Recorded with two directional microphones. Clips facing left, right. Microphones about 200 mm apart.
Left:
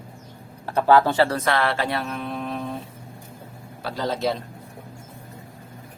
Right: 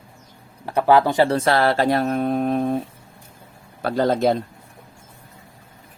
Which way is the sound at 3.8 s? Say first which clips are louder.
Right 7 dB; 55° right (ahead or behind).